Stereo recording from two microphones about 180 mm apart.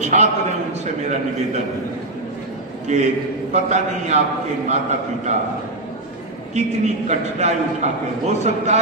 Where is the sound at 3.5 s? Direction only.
40° right (ahead or behind).